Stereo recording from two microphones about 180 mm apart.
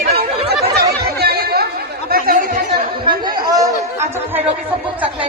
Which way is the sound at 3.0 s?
25° right (ahead or behind).